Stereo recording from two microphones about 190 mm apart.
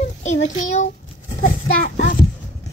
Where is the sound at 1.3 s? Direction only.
40° left (ahead or behind).